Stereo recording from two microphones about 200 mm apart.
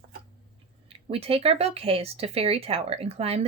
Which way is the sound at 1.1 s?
30° right (ahead or behind).